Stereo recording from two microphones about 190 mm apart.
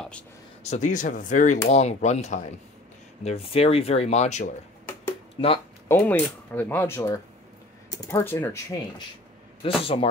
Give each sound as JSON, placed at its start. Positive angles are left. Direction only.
{"t": 0.7, "sound": "speech", "side_deg": 40}
{"t": 5.4, "sound": "speech", "side_deg": 25}
{"t": 5.9, "sound": "speech", "side_deg": 10}
{"t": 9.6, "sound": "speech", "side_deg": 30}